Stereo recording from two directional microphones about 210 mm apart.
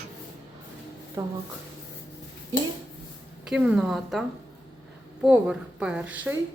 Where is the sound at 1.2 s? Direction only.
15° right (ahead or behind).